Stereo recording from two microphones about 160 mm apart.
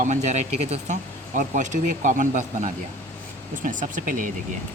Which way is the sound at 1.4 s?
55° right (ahead or behind).